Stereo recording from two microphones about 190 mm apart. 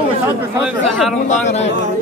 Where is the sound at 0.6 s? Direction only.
Centre (ahead or behind).